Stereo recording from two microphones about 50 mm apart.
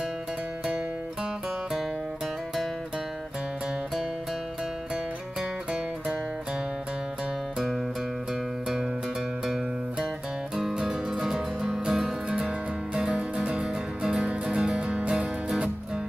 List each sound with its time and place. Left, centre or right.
10.7 s music: centre